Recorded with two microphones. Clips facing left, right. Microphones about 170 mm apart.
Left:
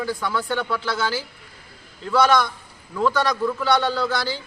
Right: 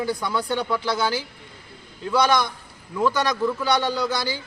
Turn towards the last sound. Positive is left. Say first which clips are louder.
# left 1 dB
turn(degrees=-15)  # may be behind; listen again after turning